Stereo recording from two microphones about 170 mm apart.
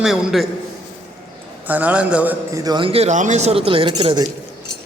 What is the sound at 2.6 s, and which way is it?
Speech, 25° right (ahead or behind).